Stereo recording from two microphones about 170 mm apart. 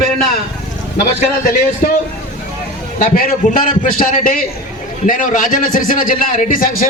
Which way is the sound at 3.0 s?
55° left (ahead or behind).